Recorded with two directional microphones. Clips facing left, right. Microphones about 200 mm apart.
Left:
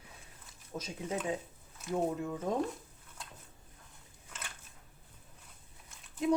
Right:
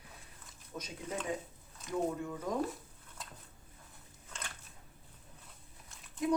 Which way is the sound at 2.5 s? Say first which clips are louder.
Left 2 dB; 25° left (ahead or behind).